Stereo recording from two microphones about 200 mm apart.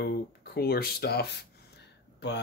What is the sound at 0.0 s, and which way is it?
Speech, 50° left (ahead or behind).